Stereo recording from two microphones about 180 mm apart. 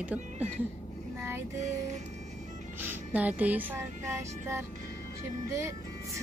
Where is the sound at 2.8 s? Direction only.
10° right (ahead or behind).